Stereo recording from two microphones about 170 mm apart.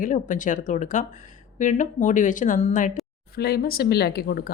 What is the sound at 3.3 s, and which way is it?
A woman's voice, 65° left (ahead or behind).